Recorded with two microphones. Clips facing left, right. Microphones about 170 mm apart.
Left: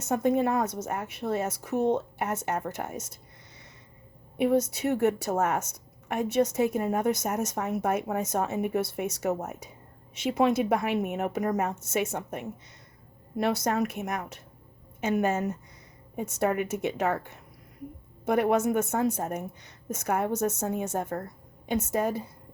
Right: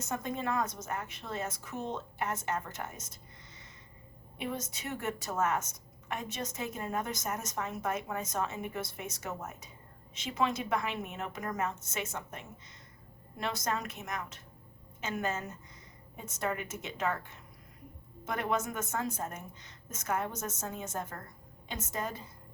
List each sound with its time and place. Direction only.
0.0 s a woman's voice: 65° left (ahead or behind)
4.4 s a woman's voice: 60° left (ahead or behind)